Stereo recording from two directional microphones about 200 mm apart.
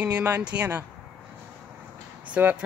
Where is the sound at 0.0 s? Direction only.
10° right (ahead or behind).